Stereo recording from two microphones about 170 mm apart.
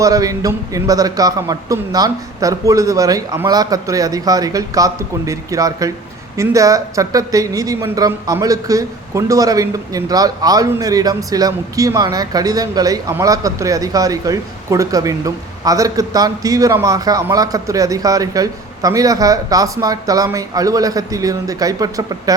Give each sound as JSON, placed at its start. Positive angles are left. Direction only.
{"t": 0.0, "sound": "speech", "side_deg": -20}